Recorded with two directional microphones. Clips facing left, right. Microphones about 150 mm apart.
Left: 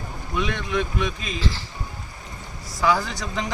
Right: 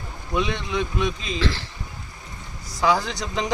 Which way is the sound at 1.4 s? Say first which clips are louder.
Right 4 dB; 65° right (ahead or behind).